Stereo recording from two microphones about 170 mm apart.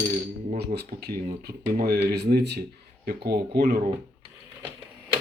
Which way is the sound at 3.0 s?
60° right (ahead or behind).